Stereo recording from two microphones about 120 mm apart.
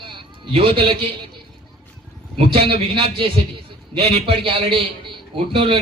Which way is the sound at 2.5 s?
45° right (ahead or behind).